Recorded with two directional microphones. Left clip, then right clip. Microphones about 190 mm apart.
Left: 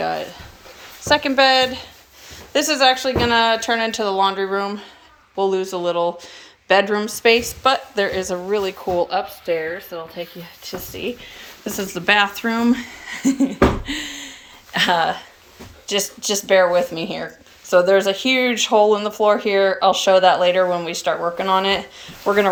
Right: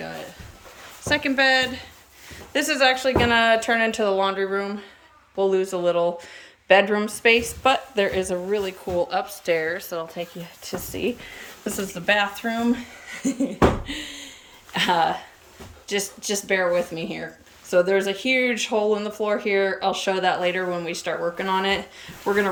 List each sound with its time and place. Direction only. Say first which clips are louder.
1.0 s a woman's voice: left 5 dB; 5° right (ahead or behind)
10.7 s speech: even; 25° right (ahead or behind)
11.7 s speech: left 5 dB; 5° right (ahead or behind)